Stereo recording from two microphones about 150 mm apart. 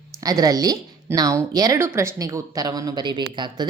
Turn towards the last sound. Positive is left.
turn(degrees=-30)  # may be behind; listen again after turning